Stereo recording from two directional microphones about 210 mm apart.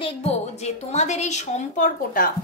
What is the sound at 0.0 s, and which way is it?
A woman's voice, 30° left (ahead or behind).